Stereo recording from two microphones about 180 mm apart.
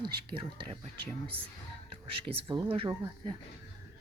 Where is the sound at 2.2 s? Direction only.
30° right (ahead or behind).